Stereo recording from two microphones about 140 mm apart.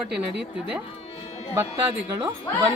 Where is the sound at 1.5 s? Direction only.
15° right (ahead or behind).